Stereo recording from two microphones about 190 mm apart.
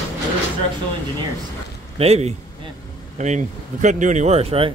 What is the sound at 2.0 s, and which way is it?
Speech, 35° right (ahead or behind).